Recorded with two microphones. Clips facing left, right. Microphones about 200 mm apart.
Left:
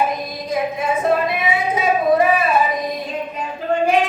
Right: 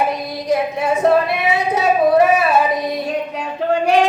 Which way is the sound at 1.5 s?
70° right (ahead or behind).